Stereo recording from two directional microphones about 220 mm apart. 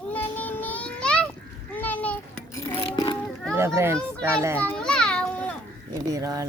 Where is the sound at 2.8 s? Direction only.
20° left (ahead or behind).